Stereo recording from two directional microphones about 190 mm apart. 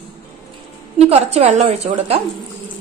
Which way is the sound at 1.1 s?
35° right (ahead or behind).